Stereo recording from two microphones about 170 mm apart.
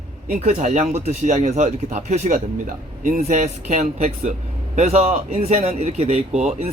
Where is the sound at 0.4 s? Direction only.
45° right (ahead or behind).